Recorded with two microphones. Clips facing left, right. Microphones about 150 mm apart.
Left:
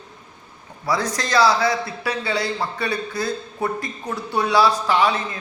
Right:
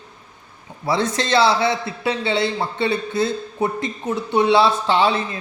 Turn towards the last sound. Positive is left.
turn(degrees=-30)  # may be behind; listen again after turning